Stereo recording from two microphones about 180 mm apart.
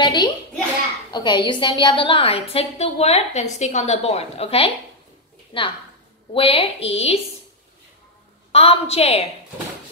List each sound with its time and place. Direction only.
0.0 s a sound: 25° left (ahead or behind)
1.1 s a woman's voice: 25° left (ahead or behind)
8.5 s a woman's voice: 35° left (ahead or behind)